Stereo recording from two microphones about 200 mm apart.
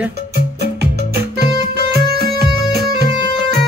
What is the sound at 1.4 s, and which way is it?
Music, 55° right (ahead or behind).